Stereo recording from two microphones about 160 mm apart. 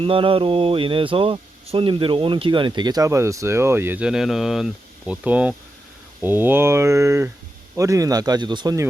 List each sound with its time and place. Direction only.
0.0 s speech: 35° right (ahead or behind)